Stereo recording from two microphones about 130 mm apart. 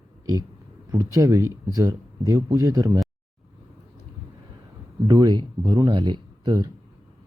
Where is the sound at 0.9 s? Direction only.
25° right (ahead or behind).